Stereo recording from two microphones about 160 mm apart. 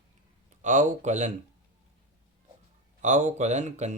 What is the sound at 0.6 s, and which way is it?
Speech, 50° right (ahead or behind).